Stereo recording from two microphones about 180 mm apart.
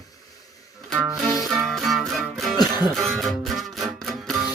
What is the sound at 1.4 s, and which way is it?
Music, centre (ahead or behind).